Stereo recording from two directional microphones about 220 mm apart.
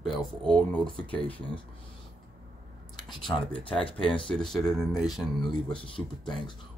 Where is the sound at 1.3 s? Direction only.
25° left (ahead or behind).